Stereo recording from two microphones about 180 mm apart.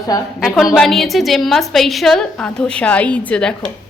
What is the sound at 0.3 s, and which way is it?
A woman's voice, centre (ahead or behind).